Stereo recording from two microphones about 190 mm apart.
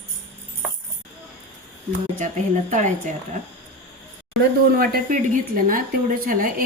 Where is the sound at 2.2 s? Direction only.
40° right (ahead or behind).